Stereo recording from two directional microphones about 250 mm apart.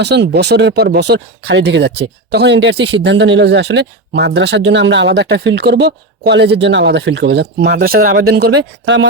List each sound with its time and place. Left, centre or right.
0.0 s speech: right